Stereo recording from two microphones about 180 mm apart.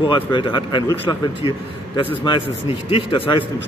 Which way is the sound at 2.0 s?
30° left (ahead or behind).